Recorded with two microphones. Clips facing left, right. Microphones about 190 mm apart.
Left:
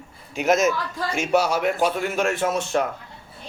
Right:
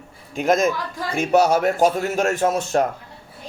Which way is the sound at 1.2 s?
45° right (ahead or behind).